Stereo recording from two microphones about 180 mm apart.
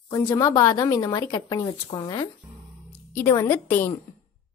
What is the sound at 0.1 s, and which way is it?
Speech, 20° left (ahead or behind).